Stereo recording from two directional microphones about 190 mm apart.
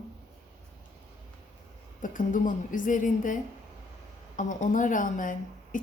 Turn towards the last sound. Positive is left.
turn(degrees=45)  # may be behind; listen again after turning